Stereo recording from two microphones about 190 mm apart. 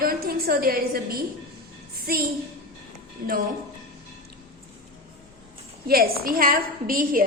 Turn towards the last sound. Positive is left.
turn(degrees=-45)  # may be behind; listen again after turning